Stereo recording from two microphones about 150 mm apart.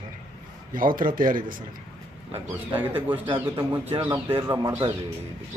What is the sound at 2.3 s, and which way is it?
Speech, 10° right (ahead or behind).